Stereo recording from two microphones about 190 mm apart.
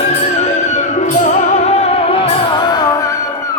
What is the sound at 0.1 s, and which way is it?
Music, 35° left (ahead or behind).